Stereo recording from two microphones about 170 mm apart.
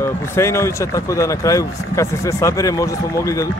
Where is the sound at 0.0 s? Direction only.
15° left (ahead or behind).